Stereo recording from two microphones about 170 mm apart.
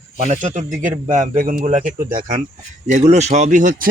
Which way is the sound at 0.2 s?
45° right (ahead or behind).